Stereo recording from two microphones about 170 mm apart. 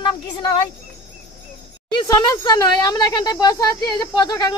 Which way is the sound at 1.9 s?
25° left (ahead or behind).